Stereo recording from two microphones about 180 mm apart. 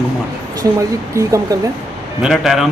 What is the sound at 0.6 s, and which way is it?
Speech, 15° right (ahead or behind).